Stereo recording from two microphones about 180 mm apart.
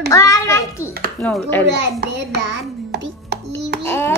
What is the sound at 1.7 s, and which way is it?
Speech, 70° right (ahead or behind).